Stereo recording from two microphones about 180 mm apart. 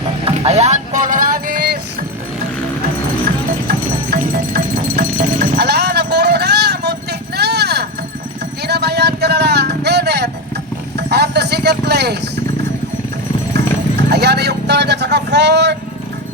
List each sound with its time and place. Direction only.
0.3 s vehicle: 35° right (ahead or behind)
3.7 s music: 60° right (ahead or behind)
8.6 s a sound: 65° right (ahead or behind)
10.9 s vehicle: 70° right (ahead or behind)
14.1 s vehicle: 65° right (ahead or behind)